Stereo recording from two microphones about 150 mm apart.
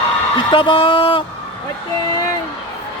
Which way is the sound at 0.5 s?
35° left (ahead or behind).